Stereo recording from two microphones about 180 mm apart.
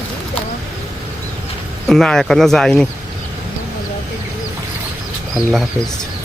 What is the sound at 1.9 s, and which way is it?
Speech, centre (ahead or behind).